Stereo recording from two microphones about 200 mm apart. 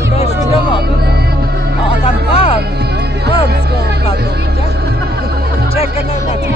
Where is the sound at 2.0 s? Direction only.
30° left (ahead or behind).